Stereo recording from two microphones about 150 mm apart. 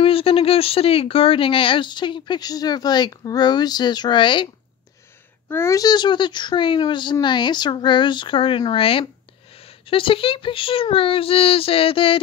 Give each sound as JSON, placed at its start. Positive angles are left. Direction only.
{"t": 0.0, "sound": "speech", "side_deg": 40}
{"t": 5.5, "sound": "speech", "side_deg": 20}